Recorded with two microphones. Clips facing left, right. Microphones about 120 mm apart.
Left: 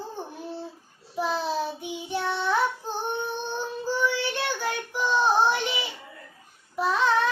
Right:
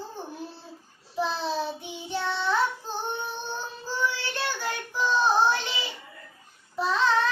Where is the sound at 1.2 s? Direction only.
10° left (ahead or behind).